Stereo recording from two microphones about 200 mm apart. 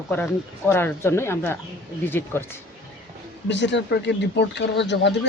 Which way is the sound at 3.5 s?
65° left (ahead or behind).